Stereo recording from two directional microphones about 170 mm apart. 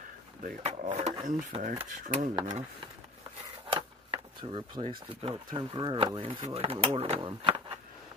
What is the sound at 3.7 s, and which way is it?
Speech, 30° right (ahead or behind).